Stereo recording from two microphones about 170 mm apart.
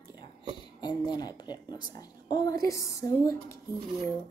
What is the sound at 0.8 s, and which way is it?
A woman's voice, 25° left (ahead or behind).